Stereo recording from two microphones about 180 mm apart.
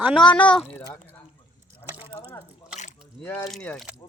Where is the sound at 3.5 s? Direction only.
5° left (ahead or behind).